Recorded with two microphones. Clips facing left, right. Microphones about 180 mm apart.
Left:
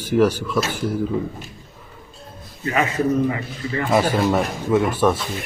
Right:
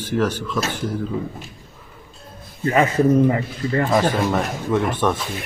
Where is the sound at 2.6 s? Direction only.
35° right (ahead or behind).